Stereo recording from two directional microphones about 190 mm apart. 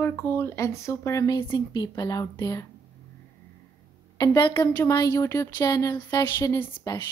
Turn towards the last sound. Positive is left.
turn(degrees=15)  # may be behind; listen again after turning